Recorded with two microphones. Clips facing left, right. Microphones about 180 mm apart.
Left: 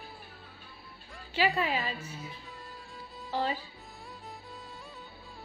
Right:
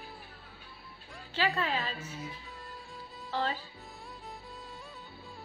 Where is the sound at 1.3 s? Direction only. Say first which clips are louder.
Left 3 dB; 15° left (ahead or behind).